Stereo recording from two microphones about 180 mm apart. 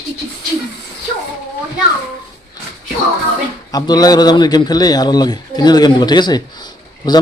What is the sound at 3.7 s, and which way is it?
A man's voice, 20° left (ahead or behind).